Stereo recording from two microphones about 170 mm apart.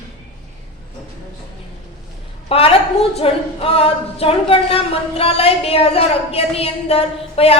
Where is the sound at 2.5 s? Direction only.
35° left (ahead or behind).